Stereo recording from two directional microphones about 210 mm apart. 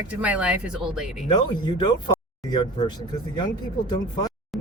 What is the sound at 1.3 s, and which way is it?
Speech, 20° left (ahead or behind).